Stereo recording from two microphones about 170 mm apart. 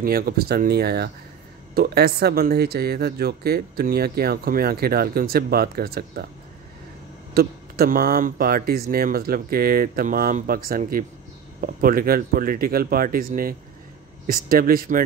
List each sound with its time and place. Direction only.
0.0 s speech: 60° right (ahead or behind)
7.3 s speech: 65° right (ahead or behind)